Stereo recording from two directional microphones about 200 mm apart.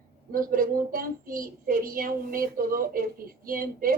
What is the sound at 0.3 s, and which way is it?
A woman's voice, 45° right (ahead or behind).